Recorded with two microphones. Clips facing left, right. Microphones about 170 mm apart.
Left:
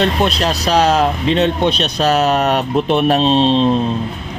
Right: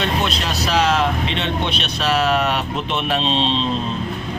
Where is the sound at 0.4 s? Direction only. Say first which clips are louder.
Left 5 dB; 40° left (ahead or behind).